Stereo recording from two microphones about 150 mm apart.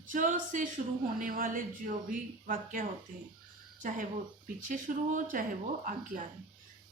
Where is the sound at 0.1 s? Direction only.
60° right (ahead or behind).